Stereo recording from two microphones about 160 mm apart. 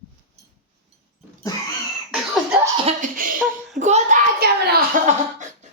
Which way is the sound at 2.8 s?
55° right (ahead or behind).